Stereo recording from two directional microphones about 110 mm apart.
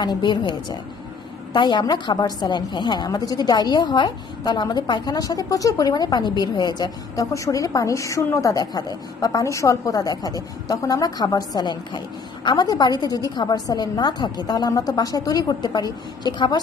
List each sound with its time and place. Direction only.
0.0 s a woman's voice: 45° left (ahead or behind)